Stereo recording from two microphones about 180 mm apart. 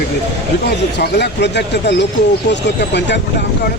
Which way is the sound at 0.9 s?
70° left (ahead or behind).